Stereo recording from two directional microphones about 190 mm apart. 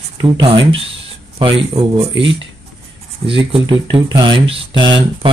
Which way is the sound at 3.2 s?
30° right (ahead or behind).